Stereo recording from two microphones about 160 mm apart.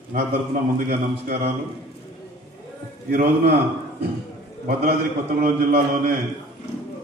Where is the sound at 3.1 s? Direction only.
90° right.